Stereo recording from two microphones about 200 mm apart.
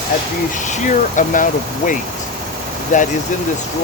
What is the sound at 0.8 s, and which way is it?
Speech, 40° left (ahead or behind).